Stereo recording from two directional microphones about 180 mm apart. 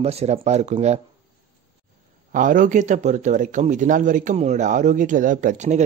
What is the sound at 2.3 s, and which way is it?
A man's voice, 45° right (ahead or behind).